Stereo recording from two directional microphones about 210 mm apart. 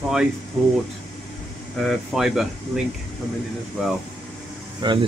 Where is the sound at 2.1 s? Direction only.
Centre (ahead or behind).